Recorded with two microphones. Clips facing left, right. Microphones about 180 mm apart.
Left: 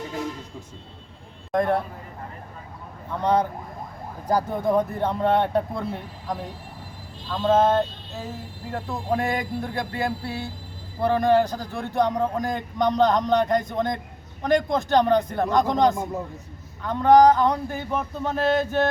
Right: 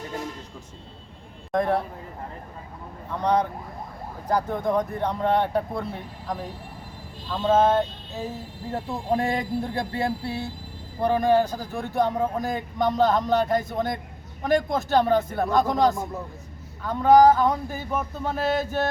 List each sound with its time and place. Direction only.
1.5 s a man's voice: centre (ahead or behind)
3.1 s a man's voice: centre (ahead or behind)
7.3 s speech: 5° right (ahead or behind)
8.7 s speech: 30° right (ahead or behind)
11.0 s a man's voice: 10° right (ahead or behind)